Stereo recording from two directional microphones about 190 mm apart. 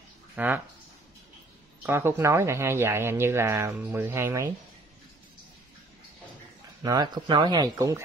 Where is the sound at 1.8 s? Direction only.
15° right (ahead or behind).